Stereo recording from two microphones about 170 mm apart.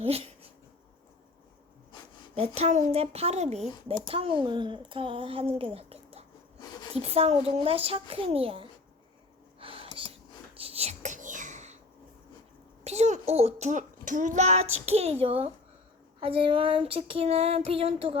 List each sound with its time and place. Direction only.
0.0 s speech: 35° right (ahead or behind)
2.6 s speech: 40° right (ahead or behind)
9.6 s whispering: 30° right (ahead or behind)
12.8 s a child's voice: 40° right (ahead or behind)